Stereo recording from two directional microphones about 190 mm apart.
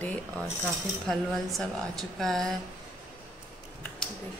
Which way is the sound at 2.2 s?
Centre (ahead or behind).